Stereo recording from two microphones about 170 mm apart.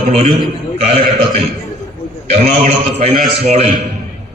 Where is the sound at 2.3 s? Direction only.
35° right (ahead or behind).